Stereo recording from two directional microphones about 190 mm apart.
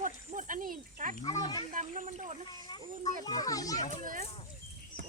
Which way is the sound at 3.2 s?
20° left (ahead or behind).